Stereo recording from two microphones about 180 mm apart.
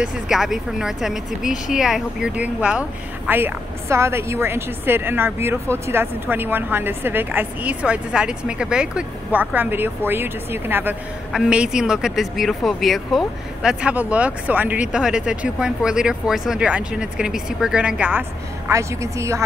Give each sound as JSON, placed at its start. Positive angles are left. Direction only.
{"t": 0.0, "sound": "a woman's voice", "side_deg": 0}